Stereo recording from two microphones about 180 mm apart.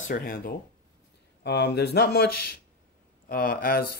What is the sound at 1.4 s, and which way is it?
Speech, 70° left (ahead or behind).